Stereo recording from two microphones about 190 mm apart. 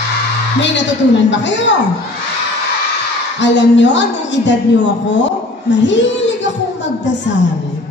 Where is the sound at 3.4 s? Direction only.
70° left (ahead or behind).